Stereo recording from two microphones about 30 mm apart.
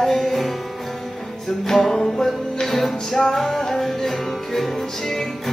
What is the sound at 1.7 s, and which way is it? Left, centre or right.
Music, centre.